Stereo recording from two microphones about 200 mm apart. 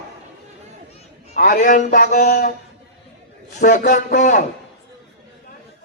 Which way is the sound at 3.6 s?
40° left (ahead or behind).